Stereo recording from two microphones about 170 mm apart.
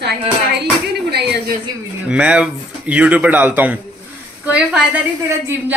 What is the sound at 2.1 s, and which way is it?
A man's voice, 5° right (ahead or behind).